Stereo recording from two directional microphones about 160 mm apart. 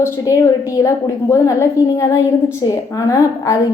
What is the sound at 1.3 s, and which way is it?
A woman's voice, 20° left (ahead or behind).